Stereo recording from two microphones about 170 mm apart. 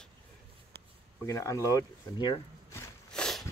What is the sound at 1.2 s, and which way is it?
Speech, 20° left (ahead or behind).